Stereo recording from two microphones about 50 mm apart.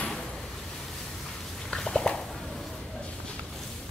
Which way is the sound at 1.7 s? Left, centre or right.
Centre.